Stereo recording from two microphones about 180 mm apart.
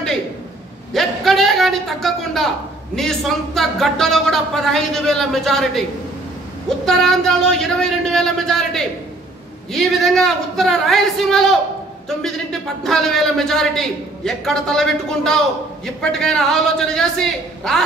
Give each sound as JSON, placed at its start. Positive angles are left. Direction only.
{"t": 0.9, "sound": "a sound", "side_deg": 0}
{"t": 3.0, "sound": "a man's voice", "side_deg": 0}
{"t": 6.9, "sound": "a man's voice", "side_deg": 0}